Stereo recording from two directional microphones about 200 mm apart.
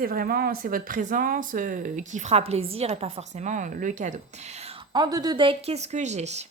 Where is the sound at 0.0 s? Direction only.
45° right (ahead or behind).